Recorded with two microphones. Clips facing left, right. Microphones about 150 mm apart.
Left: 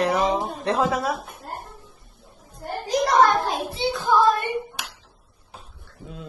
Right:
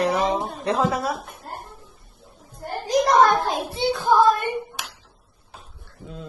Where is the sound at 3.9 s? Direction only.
50° right (ahead or behind).